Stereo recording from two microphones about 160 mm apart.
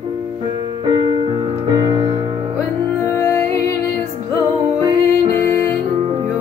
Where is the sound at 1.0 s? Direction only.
30° right (ahead or behind).